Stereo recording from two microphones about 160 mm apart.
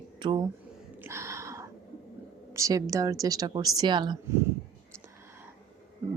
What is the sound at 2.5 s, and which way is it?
Speech, 20° right (ahead or behind).